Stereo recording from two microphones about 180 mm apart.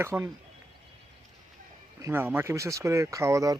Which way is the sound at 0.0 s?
15° right (ahead or behind).